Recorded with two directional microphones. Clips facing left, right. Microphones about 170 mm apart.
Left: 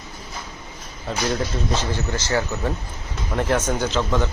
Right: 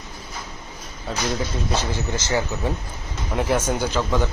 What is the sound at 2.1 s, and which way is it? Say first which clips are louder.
Speech: even; 15° right (ahead or behind).